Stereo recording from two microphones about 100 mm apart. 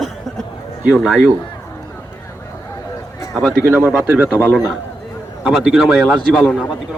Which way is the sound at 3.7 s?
20° right (ahead or behind).